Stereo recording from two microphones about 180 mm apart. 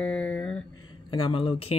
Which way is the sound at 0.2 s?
5° left (ahead or behind).